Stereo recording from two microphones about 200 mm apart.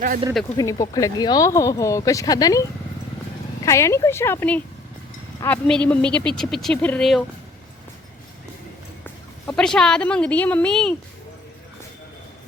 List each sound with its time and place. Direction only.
0.5 s speech: 15° left (ahead or behind)
3.7 s speech: 15° left (ahead or behind)
9.5 s speech: 5° left (ahead or behind)